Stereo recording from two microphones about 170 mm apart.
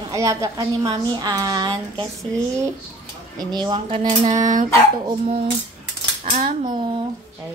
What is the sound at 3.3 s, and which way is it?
A woman's voice, 25° right (ahead or behind).